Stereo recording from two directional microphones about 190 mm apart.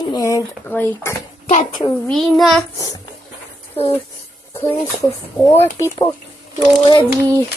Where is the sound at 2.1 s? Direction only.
Centre (ahead or behind).